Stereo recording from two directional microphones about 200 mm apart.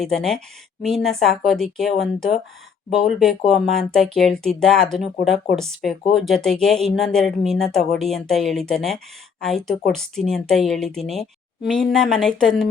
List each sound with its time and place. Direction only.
0.0 s speech: centre (ahead or behind)